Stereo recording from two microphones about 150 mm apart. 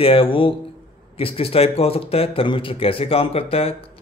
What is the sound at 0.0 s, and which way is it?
Speech, 40° left (ahead or behind).